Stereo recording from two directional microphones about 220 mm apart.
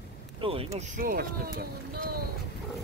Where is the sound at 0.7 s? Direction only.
40° right (ahead or behind).